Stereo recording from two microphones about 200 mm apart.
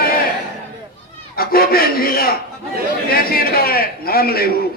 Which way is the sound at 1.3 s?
45° left (ahead or behind).